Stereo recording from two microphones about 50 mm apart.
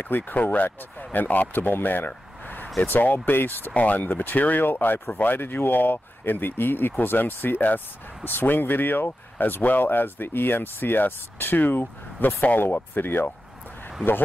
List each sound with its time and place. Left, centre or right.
0.0 s speech: left